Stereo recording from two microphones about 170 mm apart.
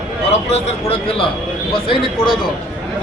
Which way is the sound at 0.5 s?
35° left (ahead or behind).